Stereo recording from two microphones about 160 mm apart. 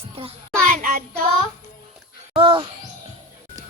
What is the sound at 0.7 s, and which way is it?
Child singing, 55° right (ahead or behind).